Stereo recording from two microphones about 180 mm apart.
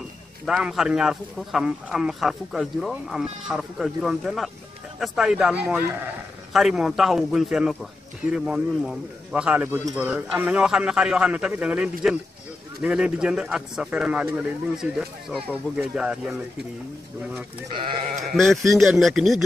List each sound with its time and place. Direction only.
0.5 s a man's voice: 5° right (ahead or behind)
18.2 s a man's voice: centre (ahead or behind)